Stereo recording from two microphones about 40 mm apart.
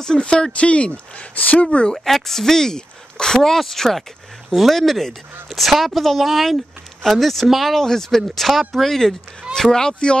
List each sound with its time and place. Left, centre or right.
0.0 s speech: centre
2.0 s speech: centre
4.5 s speech: centre
7.7 s speech: centre